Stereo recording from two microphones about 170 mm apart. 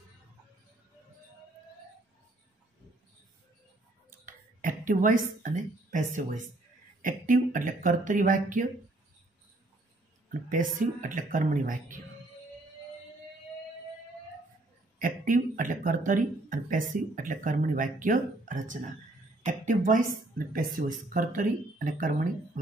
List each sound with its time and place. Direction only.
4.3 s speech: 50° right (ahead or behind)
10.5 s speech: 50° right (ahead or behind)
15.0 s a woman's voice: 50° right (ahead or behind)